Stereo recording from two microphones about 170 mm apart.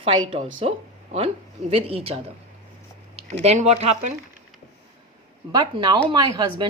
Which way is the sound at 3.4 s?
40° right (ahead or behind).